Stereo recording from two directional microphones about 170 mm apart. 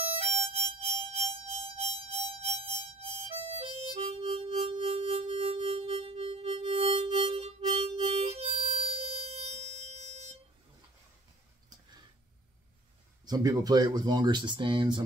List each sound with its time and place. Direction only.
0.2 s music: 35° right (ahead or behind)
13.2 s speech: 25° right (ahead or behind)